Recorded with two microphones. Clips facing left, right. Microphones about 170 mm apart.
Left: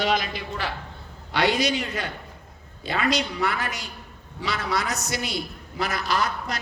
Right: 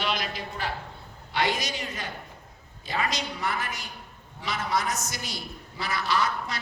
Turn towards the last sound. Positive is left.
turn(degrees=40)  # may be behind; listen again after turning